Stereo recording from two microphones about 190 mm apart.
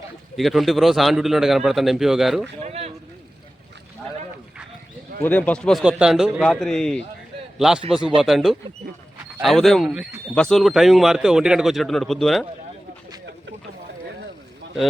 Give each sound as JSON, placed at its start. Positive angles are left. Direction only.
{"t": 0.3, "sound": "a man's voice", "side_deg": 0}
{"t": 2.6, "sound": "speech", "side_deg": -35}
{"t": 5.2, "sound": "a man's voice", "side_deg": 10}